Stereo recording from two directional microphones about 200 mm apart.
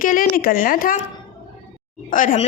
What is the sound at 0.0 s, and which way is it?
Speech, 45° left (ahead or behind).